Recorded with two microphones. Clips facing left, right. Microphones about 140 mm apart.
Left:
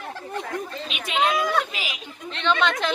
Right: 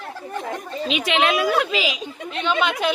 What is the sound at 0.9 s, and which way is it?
Speech, 90° right.